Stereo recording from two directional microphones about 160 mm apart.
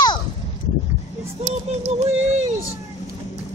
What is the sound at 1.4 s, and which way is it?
Speech, 45° right (ahead or behind).